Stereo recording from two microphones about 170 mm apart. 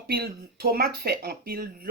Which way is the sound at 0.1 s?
65° right (ahead or behind).